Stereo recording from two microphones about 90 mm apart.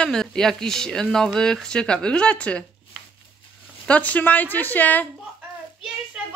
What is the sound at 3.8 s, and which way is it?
Speech, 15° left (ahead or behind).